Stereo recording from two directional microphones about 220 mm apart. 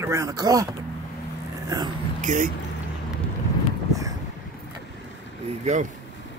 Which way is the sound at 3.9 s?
15° right (ahead or behind).